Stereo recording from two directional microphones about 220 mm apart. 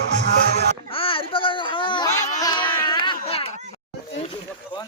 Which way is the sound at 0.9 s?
25° left (ahead or behind).